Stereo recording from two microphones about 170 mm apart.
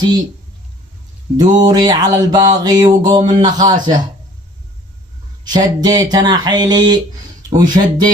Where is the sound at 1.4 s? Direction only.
25° right (ahead or behind).